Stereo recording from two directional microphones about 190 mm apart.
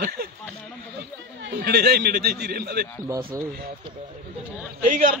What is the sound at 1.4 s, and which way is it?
Speech, 60° right (ahead or behind).